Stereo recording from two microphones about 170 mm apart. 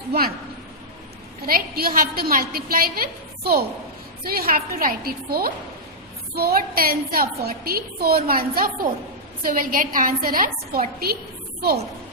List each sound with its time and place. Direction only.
0.1 s a woman's voice: 65° right (ahead or behind)
1.5 s a woman's voice: 60° right (ahead or behind)